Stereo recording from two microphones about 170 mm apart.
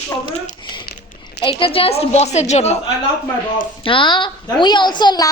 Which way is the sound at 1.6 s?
35° left (ahead or behind).